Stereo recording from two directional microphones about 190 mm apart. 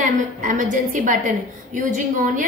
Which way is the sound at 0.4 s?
45° right (ahead or behind).